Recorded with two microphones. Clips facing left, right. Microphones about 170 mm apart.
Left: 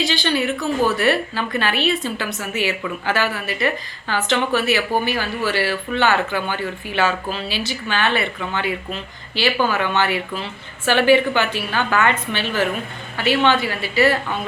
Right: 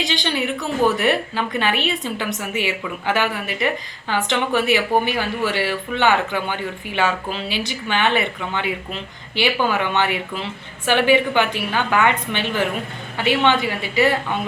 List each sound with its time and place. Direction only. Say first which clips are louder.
0.0 s a woman's voice: left 2 dB; 20° right (ahead or behind)